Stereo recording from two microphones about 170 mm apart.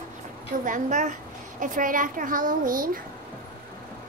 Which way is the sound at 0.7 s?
50° right (ahead or behind).